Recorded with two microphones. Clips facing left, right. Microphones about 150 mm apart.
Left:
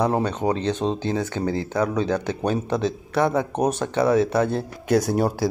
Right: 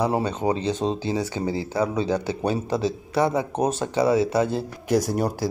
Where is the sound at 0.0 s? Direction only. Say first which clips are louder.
Left 1 dB; 10° right (ahead or behind).